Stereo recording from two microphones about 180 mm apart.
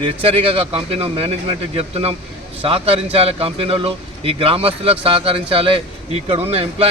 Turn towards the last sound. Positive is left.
turn(degrees=-35)  # may be behind; listen again after turning